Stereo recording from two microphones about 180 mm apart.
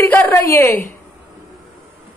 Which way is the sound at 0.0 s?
10° left (ahead or behind).